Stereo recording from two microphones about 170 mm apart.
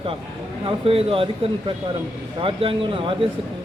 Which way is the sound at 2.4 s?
30° right (ahead or behind).